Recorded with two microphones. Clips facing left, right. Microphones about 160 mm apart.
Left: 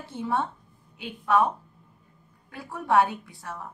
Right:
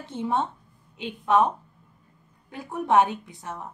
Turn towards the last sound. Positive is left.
turn(degrees=-20)  # may be behind; listen again after turning